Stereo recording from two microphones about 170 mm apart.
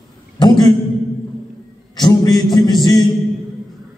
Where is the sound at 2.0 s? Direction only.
25° left (ahead or behind).